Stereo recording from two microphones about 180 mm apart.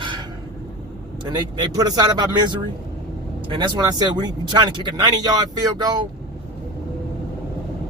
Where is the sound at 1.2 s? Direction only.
20° right (ahead or behind).